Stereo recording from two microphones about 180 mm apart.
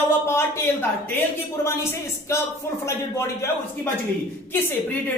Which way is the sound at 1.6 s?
15° left (ahead or behind).